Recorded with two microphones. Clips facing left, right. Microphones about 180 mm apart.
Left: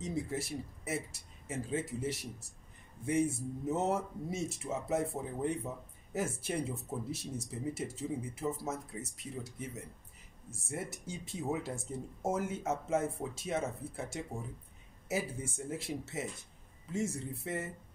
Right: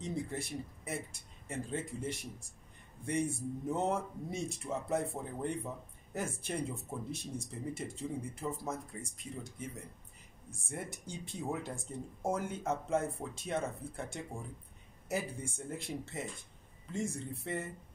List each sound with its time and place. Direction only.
0.0 s speech: 5° left (ahead or behind)
10.7 s speech: 5° left (ahead or behind)